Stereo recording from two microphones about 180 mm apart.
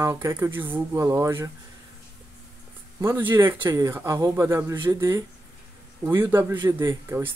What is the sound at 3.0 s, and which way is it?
Speech, 15° right (ahead or behind).